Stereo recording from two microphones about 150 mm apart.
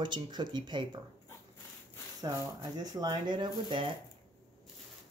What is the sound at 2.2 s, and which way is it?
Speech, 25° right (ahead or behind).